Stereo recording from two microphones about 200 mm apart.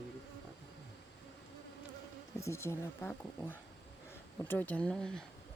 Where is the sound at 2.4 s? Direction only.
15° left (ahead or behind).